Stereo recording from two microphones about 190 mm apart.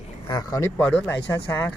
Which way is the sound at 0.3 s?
20° left (ahead or behind).